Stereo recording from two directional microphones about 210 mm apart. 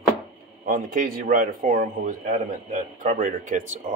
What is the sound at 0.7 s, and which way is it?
Speech, 40° right (ahead or behind).